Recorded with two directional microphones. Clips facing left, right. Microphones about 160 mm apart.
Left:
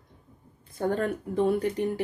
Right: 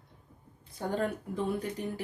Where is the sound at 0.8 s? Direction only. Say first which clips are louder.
Left 5 dB; 60° left (ahead or behind).